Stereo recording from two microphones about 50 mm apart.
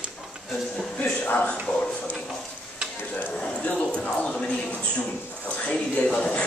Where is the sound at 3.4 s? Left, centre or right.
Left.